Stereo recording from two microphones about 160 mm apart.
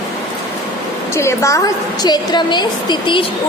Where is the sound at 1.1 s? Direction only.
20° left (ahead or behind).